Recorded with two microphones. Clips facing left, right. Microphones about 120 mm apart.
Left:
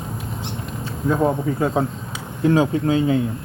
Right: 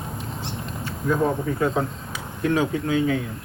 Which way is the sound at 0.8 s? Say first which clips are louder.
Left 3 dB; 25° left (ahead or behind).